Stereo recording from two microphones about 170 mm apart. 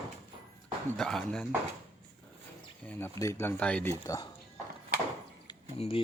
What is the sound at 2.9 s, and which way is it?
Speech, 15° left (ahead or behind).